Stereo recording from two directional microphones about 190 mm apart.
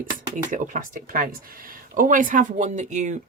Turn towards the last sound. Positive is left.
turn(degrees=-40)  # may be behind; listen again after turning